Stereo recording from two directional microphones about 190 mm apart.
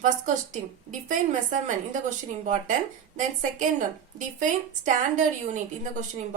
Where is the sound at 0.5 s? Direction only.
40° right (ahead or behind).